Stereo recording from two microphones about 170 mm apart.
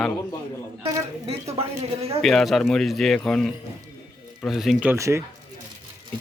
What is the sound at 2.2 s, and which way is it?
Speech, centre (ahead or behind).